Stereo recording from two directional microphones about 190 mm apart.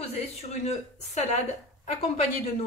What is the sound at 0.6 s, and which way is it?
Speech, 35° left (ahead or behind).